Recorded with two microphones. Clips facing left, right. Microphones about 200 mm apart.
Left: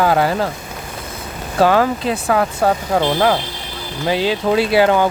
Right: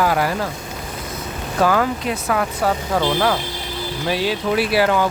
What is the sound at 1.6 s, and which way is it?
Speech, 30° left (ahead or behind).